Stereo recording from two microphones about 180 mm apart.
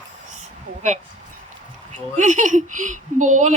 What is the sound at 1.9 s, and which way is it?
Speech, 45° right (ahead or behind).